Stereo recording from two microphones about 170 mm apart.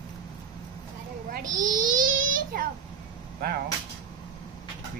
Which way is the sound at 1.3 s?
50° right (ahead or behind).